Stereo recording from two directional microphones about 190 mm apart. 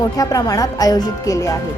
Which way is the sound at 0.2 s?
20° left (ahead or behind).